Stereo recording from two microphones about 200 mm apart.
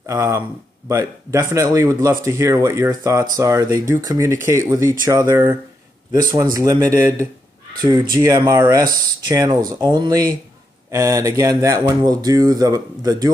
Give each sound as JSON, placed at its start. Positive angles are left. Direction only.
{"t": 0.0, "sound": "speech", "side_deg": -15}